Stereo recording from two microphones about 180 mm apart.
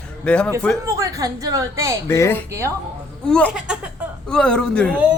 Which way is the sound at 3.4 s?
5° right (ahead or behind).